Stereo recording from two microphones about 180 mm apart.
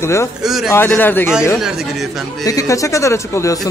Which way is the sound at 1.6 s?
Centre (ahead or behind).